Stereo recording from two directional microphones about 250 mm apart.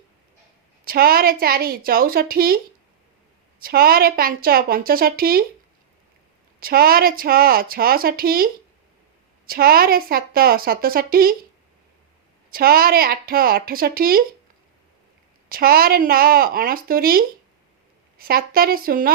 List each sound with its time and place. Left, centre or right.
0.9 s a woman's voice: right
3.6 s a woman's voice: right
6.6 s a woman's voice: right
9.5 s a woman's voice: right
12.5 s a woman's voice: right
15.4 s a woman's voice: right